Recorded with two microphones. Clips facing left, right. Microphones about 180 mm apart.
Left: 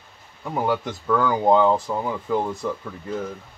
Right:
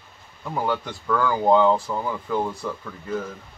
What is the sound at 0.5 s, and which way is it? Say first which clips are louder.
Speech: left 2 dB; 20° left (ahead or behind).